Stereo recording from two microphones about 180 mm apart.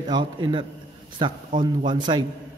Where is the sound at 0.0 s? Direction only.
25° right (ahead or behind).